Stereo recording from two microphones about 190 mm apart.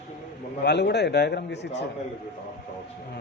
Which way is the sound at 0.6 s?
60° left (ahead or behind).